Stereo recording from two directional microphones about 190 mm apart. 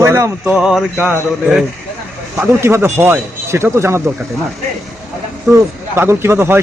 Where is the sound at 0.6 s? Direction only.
5° right (ahead or behind).